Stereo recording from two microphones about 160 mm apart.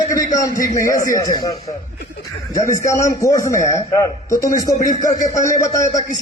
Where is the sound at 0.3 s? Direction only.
20° left (ahead or behind).